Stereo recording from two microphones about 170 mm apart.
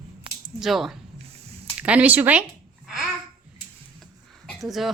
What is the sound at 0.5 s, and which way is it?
Speech, centre (ahead or behind).